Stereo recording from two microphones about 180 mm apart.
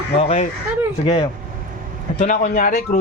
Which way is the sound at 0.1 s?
35° left (ahead or behind).